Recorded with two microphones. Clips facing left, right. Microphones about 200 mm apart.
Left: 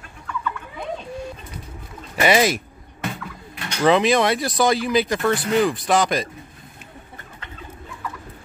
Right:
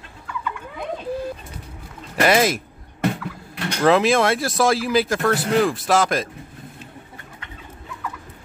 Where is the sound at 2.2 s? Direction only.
Centre (ahead or behind).